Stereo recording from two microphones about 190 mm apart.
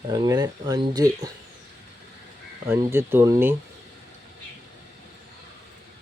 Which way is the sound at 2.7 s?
10° right (ahead or behind).